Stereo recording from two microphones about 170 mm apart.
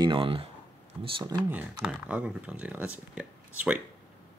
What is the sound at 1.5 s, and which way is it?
Speech, 10° right (ahead or behind).